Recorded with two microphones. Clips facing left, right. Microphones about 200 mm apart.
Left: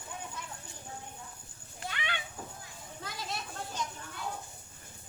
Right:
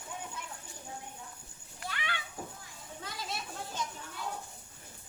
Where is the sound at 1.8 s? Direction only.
20° left (ahead or behind).